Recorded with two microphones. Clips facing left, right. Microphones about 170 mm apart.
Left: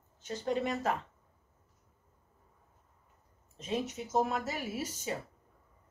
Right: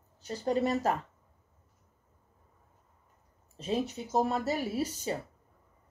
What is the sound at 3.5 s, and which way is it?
Speech, 35° right (ahead or behind).